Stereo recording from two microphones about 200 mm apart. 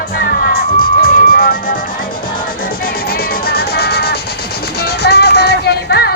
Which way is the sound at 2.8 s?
50° left (ahead or behind).